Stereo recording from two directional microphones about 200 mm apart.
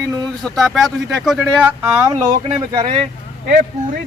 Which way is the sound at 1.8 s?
15° right (ahead or behind).